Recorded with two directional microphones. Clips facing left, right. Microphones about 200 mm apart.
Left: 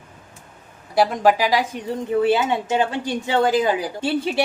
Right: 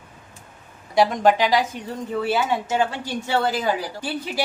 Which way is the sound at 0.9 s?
5° left (ahead or behind).